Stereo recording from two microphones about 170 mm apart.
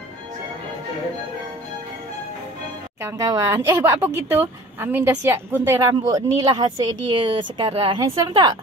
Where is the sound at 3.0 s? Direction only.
20° right (ahead or behind).